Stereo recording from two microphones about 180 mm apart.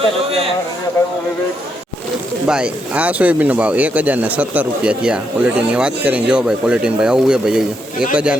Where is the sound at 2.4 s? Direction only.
5° right (ahead or behind).